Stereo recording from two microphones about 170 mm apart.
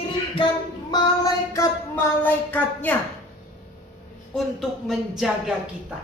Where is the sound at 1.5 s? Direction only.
15° left (ahead or behind).